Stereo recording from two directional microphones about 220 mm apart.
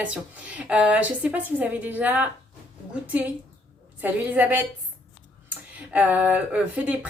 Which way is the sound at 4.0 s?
5° right (ahead or behind).